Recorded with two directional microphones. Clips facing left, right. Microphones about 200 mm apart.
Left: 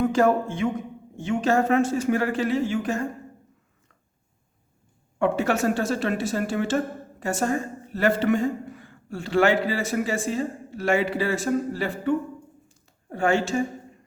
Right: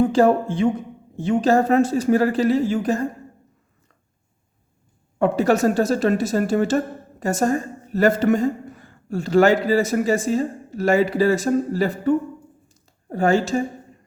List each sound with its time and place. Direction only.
0.0 s a woman's voice: 30° right (ahead or behind)
5.2 s a woman's voice: 40° right (ahead or behind)
12.6 s a sound: 40° right (ahead or behind)